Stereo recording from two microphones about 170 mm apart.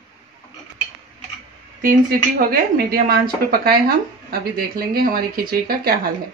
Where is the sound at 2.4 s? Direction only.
60° right (ahead or behind).